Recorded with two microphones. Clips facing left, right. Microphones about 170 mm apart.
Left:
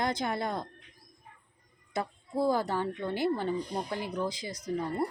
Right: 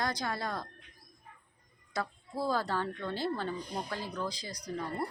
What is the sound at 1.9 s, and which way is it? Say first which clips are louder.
Speech: left 4 dB; 20° left (ahead or behind).